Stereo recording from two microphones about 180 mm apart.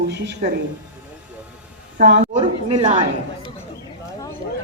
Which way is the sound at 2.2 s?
30° right (ahead or behind).